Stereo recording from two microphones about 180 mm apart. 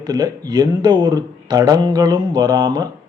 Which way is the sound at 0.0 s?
20° right (ahead or behind).